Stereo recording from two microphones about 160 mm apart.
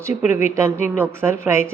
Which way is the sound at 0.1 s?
50° left (ahead or behind).